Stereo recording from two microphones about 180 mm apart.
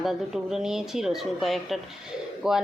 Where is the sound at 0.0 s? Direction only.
Centre (ahead or behind).